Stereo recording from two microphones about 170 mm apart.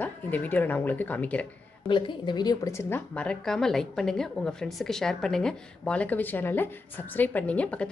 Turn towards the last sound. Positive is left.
turn(degrees=5)  # may be behind; listen again after turning